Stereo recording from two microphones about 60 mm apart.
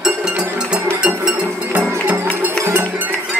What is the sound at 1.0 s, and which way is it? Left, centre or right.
Music, centre.